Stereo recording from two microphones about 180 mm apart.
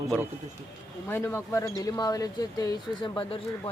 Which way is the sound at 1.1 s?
15° left (ahead or behind).